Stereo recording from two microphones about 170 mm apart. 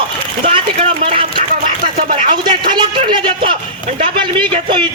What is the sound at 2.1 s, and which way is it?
A man's voice, 30° right (ahead or behind).